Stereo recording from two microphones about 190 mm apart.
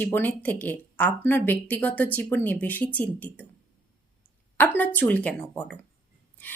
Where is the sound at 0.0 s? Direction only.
10° left (ahead or behind).